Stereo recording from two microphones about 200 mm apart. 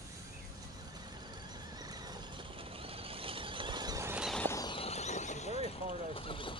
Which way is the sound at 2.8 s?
30° right (ahead or behind).